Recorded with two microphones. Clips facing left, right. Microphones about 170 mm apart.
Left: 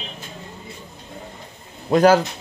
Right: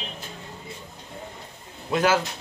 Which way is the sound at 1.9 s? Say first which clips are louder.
Left 8 dB; 40° left (ahead or behind).